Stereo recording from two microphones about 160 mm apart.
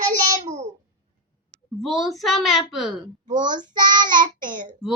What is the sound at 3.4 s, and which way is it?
Child singing, 25° right (ahead or behind).